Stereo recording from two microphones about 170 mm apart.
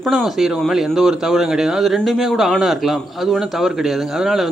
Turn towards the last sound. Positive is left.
turn(degrees=0)  # may be behind; listen again after turning